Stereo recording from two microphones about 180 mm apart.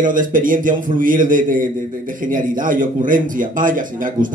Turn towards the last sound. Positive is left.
turn(degrees=-45)  # may be behind; listen again after turning